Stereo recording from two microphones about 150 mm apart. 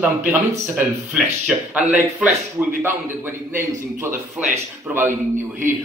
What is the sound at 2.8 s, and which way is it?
A man's voice, 15° right (ahead or behind).